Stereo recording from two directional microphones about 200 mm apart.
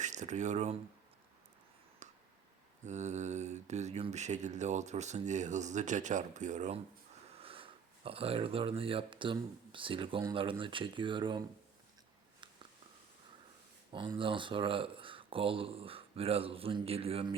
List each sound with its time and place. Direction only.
0.0 s speech: 35° right (ahead or behind)
2.0 s a sound: 35° right (ahead or behind)
2.8 s speech: 35° right (ahead or behind)
13.9 s speech: 25° right (ahead or behind)